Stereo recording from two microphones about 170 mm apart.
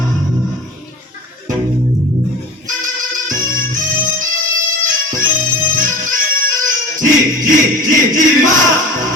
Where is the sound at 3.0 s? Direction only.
50° right (ahead or behind).